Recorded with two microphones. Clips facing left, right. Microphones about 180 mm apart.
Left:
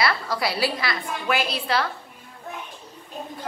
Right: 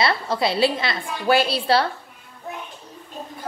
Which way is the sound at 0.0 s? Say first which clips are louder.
Right 3 dB; 25° right (ahead or behind).